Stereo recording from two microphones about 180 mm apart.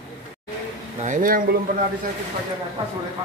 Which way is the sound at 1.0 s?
45° right (ahead or behind).